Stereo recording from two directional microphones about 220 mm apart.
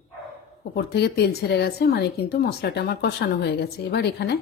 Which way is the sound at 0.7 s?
50° left (ahead or behind).